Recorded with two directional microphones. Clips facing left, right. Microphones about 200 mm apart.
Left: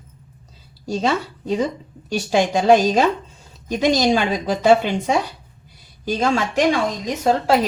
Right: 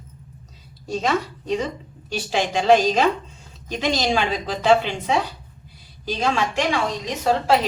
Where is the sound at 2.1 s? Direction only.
45° left (ahead or behind).